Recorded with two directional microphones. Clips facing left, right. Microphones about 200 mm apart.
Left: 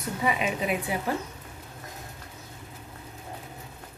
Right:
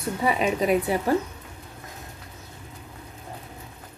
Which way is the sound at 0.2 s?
35° right (ahead or behind).